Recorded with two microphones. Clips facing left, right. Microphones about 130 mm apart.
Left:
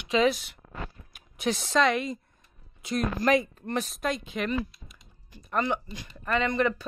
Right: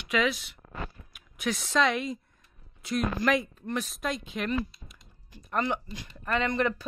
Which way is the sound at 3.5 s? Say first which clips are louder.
Left 2 dB; 35° left (ahead or behind).